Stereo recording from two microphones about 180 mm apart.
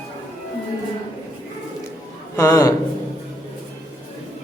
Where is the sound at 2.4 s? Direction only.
15° left (ahead or behind).